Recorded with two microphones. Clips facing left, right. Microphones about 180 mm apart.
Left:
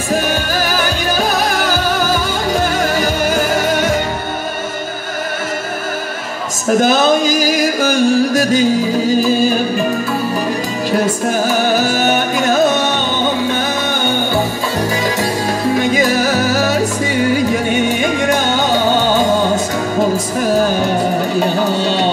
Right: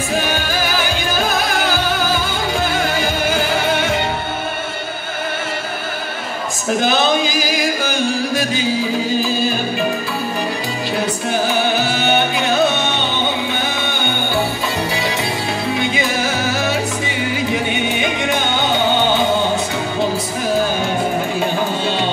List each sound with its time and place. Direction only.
0.1 s music: 40° left (ahead or behind)
6.8 s music: 40° left (ahead or behind)
10.9 s music: 40° left (ahead or behind)
15.6 s music: 40° left (ahead or behind)